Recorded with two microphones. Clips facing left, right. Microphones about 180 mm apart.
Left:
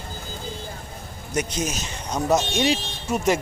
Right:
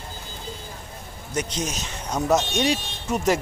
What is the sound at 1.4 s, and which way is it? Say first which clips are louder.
Speech: left 2 dB; 5° left (ahead or behind).